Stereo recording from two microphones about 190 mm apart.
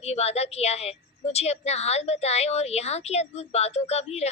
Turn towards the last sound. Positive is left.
turn(degrees=35)  # may be behind; listen again after turning